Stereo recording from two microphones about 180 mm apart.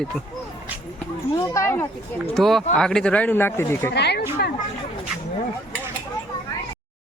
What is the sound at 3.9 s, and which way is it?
Speech, 65° left (ahead or behind).